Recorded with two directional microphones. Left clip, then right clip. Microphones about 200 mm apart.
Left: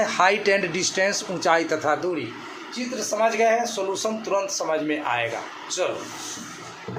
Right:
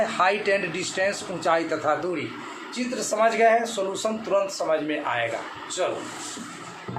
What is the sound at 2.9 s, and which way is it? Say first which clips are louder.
A man's voice: even; 10° right (ahead or behind).